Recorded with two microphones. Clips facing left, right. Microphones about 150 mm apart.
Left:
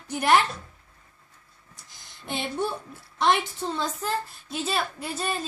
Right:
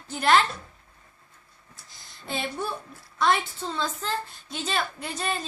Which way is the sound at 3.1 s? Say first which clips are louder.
Left 1 dB; 20° left (ahead or behind).